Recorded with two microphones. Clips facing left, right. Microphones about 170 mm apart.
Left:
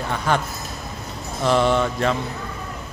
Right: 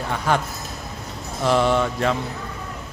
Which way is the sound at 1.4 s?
5° right (ahead or behind).